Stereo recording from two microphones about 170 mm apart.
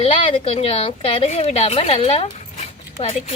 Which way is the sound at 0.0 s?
35° left (ahead or behind).